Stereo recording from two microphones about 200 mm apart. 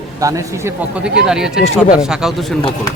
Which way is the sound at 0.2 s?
15° right (ahead or behind).